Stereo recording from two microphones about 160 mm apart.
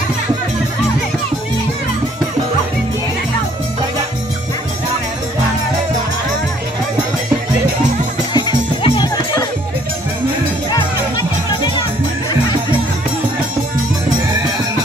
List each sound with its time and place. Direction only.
8.3 s music: 30° left (ahead or behind)